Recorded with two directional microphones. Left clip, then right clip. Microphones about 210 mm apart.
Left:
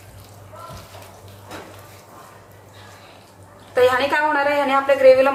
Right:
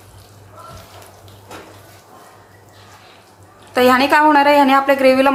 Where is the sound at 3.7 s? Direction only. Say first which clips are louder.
Right 4 dB; 55° right (ahead or behind).